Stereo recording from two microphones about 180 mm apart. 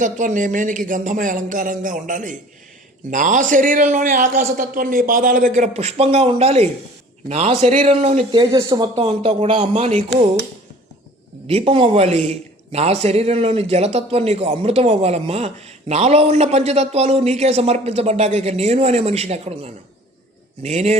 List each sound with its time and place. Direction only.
0.0 s a man's voice: 45° right (ahead or behind)
8.4 s speech: 20° right (ahead or behind)
9.0 s a man's voice: 35° right (ahead or behind)
11.4 s a man's voice: 30° right (ahead or behind)